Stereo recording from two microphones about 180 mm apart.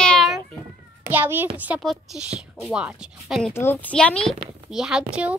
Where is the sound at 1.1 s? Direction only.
10° right (ahead or behind).